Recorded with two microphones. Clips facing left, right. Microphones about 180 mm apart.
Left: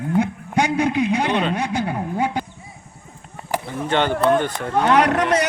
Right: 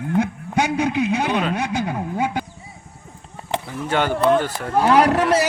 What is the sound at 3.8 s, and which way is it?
A man's voice, 5° right (ahead or behind).